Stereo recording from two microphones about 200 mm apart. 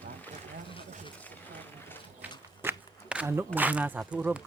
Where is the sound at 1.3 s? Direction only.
10° left (ahead or behind).